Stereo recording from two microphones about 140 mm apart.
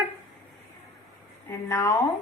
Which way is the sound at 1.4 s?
15° left (ahead or behind).